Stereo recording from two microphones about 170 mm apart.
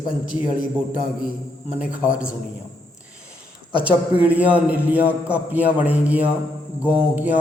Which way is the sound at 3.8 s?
10° right (ahead or behind).